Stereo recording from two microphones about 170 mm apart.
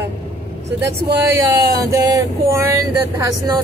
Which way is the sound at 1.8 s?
20° right (ahead or behind).